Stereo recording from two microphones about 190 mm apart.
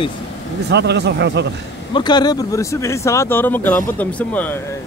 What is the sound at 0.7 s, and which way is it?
Speech, 60° right (ahead or behind).